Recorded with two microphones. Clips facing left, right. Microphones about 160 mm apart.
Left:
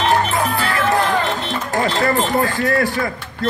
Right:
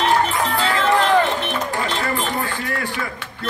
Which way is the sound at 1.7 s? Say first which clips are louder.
Left 5 dB; 35° left (ahead or behind).